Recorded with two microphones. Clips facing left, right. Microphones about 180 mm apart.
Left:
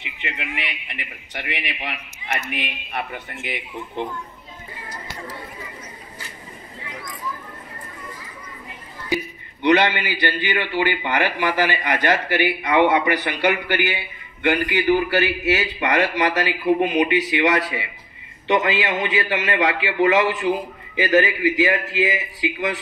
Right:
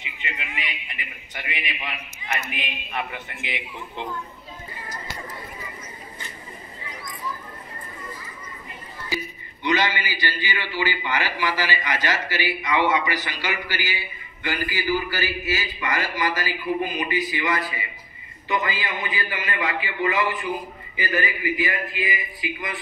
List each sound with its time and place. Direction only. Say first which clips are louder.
0.0 s a sound: left 4 dB; 65° left (ahead or behind)
3.1 s a man's voice: left 3 dB; 45° left (ahead or behind)
9.1 s a man's voice: left 7 dB; 65° left (ahead or behind); by 22.8 s 90° left